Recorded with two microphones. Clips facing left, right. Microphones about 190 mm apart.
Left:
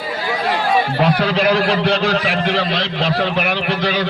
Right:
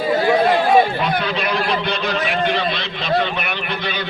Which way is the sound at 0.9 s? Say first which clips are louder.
Left 5 dB; 85° left.